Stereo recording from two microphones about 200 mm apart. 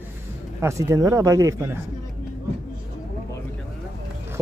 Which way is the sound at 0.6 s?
15° right (ahead or behind).